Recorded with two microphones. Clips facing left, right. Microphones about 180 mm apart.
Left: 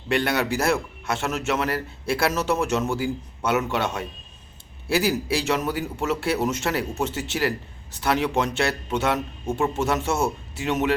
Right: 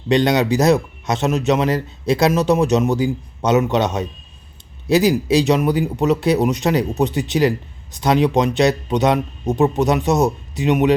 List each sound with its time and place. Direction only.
0.1 s speech: 20° right (ahead or behind)